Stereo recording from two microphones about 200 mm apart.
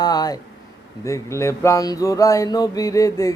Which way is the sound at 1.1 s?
15° left (ahead or behind).